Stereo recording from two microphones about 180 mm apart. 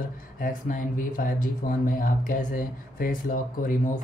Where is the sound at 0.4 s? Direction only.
45° left (ahead or behind).